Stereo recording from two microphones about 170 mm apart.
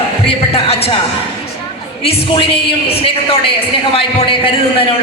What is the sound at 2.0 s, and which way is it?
A man's voice, 35° left (ahead or behind).